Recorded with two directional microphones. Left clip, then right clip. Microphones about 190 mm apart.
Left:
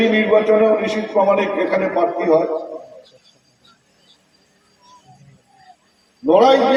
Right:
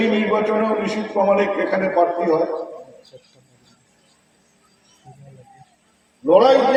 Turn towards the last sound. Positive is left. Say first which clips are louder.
# left 1 dB
turn(degrees=30)  # may be behind; listen again after turning